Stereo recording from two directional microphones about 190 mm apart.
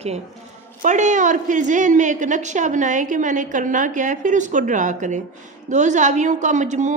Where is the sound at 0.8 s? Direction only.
40° right (ahead or behind).